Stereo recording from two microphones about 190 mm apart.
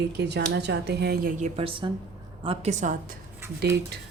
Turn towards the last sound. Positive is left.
turn(degrees=-60)  # may be behind; listen again after turning